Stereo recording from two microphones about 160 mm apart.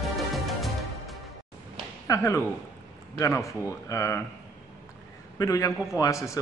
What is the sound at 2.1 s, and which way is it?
Speech, 20° left (ahead or behind).